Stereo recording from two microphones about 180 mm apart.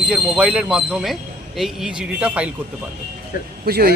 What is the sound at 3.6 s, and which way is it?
Speech, 60° right (ahead or behind).